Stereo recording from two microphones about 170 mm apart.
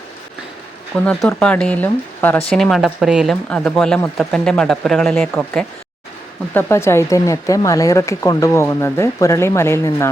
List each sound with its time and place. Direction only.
0.9 s speech: 5° left (ahead or behind)